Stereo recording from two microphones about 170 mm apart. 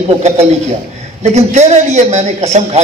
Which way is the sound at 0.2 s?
40° right (ahead or behind).